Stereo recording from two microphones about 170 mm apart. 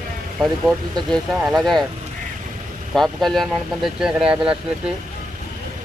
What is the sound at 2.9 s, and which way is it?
Speech, centre (ahead or behind).